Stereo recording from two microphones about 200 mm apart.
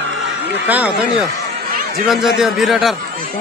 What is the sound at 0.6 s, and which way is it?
Speech, 10° right (ahead or behind).